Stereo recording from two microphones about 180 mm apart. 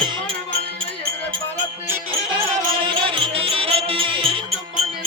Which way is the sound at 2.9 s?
30° right (ahead or behind).